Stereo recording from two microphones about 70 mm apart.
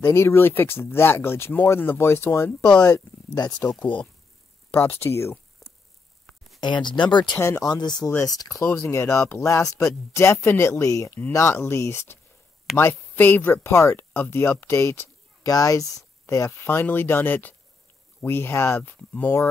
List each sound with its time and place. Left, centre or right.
0.1 s speech: left
2.8 s speech: left
3.5 s speech: centre
4.7 s speech: left
6.6 s speech: left
7.3 s speech: left
7.6 s speech: left
8.3 s speech: left
11.1 s speech: left
11.3 s speech: left
13.7 s speech: left
15.4 s speech: left
16.4 s speech: left
18.9 s speech: centre